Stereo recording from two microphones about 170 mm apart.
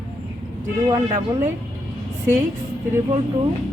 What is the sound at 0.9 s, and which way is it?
Speech, 20° right (ahead or behind).